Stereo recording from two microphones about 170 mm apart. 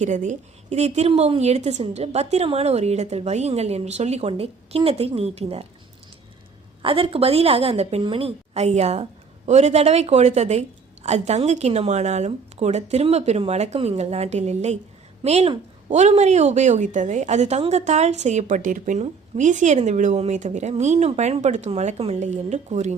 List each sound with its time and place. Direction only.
0.0 s a woman's voice: 45° right (ahead or behind)
6.8 s a woman's voice: 30° right (ahead or behind)